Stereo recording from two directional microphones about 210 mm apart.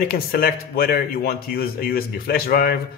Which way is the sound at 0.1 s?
45° left (ahead or behind).